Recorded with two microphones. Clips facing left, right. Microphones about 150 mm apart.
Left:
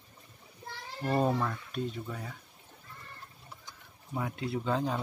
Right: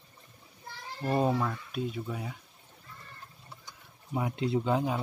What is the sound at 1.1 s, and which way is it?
Speech, 5° right (ahead or behind).